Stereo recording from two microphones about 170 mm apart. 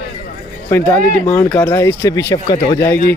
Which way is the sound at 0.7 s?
10° left (ahead or behind).